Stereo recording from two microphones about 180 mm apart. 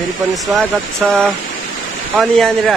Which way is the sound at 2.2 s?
Centre (ahead or behind).